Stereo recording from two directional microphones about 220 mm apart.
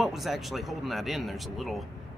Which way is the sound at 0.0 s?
Centre (ahead or behind).